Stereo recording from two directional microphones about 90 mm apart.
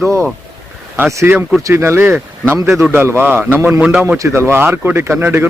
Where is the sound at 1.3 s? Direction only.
25° right (ahead or behind).